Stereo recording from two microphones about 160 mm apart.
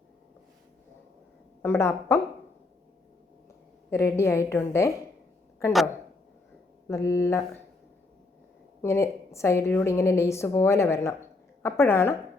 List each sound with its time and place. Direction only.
1.6 s a woman's voice: 15° left (ahead or behind)
3.8 s a woman's voice: 15° left (ahead or behind)
6.8 s a woman's voice: 20° left (ahead or behind)
8.8 s a woman's voice: 15° left (ahead or behind)